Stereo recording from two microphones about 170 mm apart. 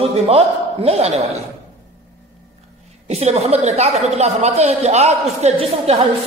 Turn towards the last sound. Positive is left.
turn(degrees=-40)  # may be behind; listen again after turning